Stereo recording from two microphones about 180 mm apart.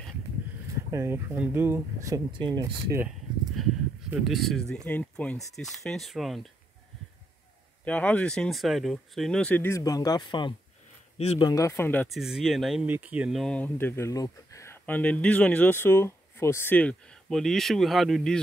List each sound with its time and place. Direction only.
0.9 s speech: 15° right (ahead or behind)
4.1 s speech: centre (ahead or behind)
7.8 s speech: 10° left (ahead or behind); by 10.5 s 25° left (ahead or behind)
11.1 s speech: 35° left (ahead or behind)
11.4 s speech: 20° left (ahead or behind)
12.2 s speech: centre (ahead or behind)